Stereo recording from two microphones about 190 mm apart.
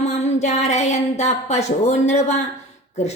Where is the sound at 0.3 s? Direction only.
35° left (ahead or behind).